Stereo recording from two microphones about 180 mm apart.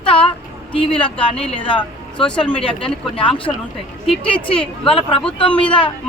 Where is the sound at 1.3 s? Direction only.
5° left (ahead or behind).